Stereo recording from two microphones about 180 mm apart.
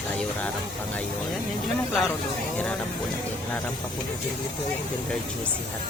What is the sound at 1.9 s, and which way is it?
Speech, centre (ahead or behind).